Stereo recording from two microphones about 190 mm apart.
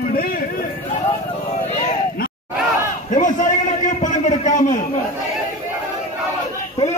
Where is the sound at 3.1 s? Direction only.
40° left (ahead or behind).